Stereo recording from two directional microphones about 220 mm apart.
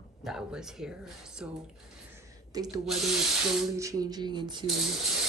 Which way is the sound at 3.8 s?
15° right (ahead or behind).